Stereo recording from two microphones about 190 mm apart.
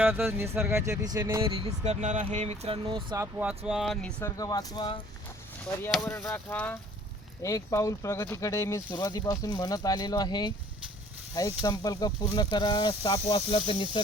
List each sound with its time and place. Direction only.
0.0 s speech: 10° right (ahead or behind)
3.3 s speech: 5° right (ahead or behind)
4.2 s speech: 20° left (ahead or behind)
5.9 s speech: centre (ahead or behind); by 14.0 s 25° left (ahead or behind)